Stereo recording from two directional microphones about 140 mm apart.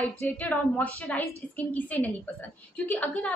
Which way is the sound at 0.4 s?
10° left (ahead or behind).